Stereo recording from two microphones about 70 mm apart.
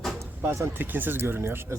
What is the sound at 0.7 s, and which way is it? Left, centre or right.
Speech, right.